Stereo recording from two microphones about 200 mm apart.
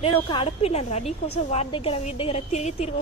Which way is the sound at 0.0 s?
25° left (ahead or behind).